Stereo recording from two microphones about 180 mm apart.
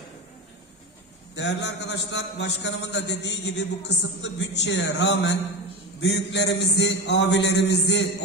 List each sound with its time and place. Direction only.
1.3 s a man's voice: 75° left (ahead or behind)